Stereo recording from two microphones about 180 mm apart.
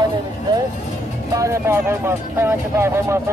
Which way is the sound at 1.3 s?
15° right (ahead or behind).